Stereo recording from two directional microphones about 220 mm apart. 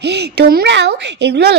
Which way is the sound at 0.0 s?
50° right (ahead or behind).